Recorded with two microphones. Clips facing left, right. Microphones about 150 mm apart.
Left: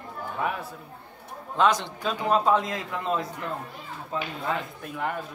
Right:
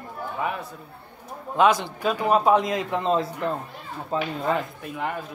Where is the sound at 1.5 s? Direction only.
10° right (ahead or behind); by 4.3 s 35° right (ahead or behind).